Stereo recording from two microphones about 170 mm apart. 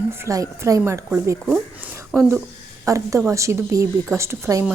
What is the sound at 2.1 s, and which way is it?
A woman's voice, 15° right (ahead or behind).